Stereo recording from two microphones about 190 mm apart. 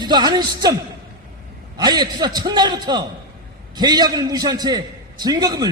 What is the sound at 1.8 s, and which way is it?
A man's voice, 20° right (ahead or behind).